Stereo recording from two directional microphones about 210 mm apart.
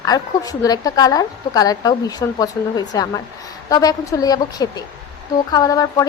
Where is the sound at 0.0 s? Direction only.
15° left (ahead or behind).